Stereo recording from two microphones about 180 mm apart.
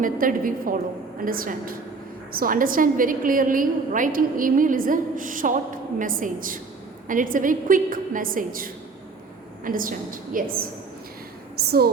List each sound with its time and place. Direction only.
0.0 s a woman's voice: 50° right (ahead or behind)